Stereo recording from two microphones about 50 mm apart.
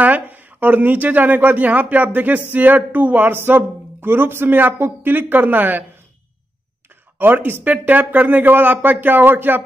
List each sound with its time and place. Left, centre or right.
0.0 s speech: right
3.3 s speech: right
7.2 s speech: right
7.6 s speech: right